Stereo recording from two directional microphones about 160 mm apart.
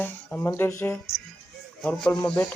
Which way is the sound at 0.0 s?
15° left (ahead or behind).